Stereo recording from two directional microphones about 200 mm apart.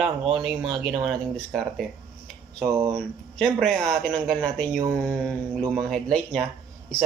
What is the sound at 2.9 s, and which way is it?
Speech, 5° left (ahead or behind).